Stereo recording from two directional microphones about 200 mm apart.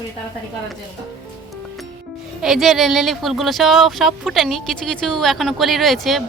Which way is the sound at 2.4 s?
Centre (ahead or behind).